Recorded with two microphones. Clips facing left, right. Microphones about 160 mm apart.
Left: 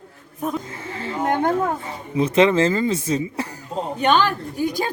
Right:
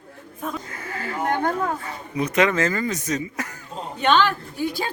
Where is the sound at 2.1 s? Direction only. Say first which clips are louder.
Left 4 dB; 30° left (ahead or behind).